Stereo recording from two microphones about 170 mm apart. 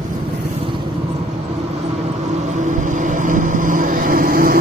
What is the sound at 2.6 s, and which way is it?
Vehicle, 45° right (ahead or behind).